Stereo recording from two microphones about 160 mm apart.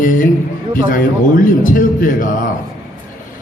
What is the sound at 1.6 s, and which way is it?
Speech, 60° left (ahead or behind).